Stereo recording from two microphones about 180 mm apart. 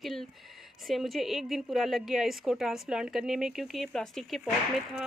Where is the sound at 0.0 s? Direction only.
Centre (ahead or behind).